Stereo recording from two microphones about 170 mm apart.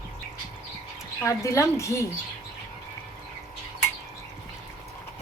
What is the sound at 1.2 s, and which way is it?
Speech, 20° left (ahead or behind).